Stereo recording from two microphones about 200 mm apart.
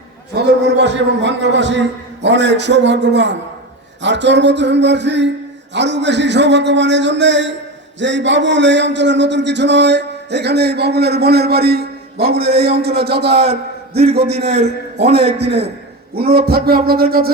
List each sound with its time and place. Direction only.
0.3 s a man's voice: 60° right (ahead or behind)
12.5 s a man's voice: 30° right (ahead or behind)
13.1 s a man's voice: 55° right (ahead or behind)
13.3 s a man's voice: 30° right (ahead or behind)
15.0 s a man's voice: 55° right (ahead or behind)